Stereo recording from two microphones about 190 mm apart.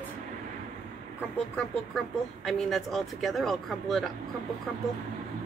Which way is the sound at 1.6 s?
Centre (ahead or behind).